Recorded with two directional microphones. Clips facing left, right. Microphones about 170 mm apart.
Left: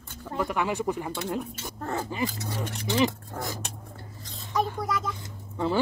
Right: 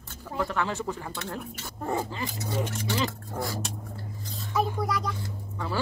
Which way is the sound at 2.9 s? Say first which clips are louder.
Left 5 dB; 20° left (ahead or behind).